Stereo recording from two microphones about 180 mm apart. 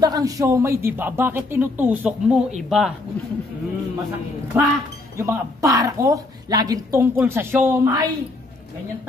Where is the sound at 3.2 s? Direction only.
10° left (ahead or behind).